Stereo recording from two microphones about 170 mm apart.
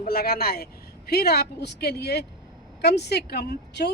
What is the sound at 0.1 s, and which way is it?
Speech, 65° left (ahead or behind).